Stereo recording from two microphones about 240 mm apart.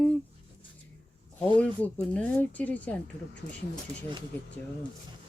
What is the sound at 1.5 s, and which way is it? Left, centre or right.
Speech, centre.